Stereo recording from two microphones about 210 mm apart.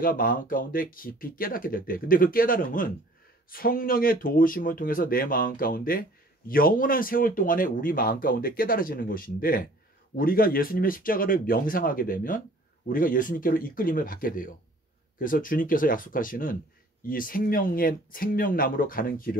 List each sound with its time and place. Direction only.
0.0 s speech: 40° left (ahead or behind)